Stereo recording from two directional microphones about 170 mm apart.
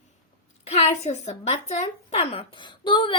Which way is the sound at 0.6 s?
40° left (ahead or behind).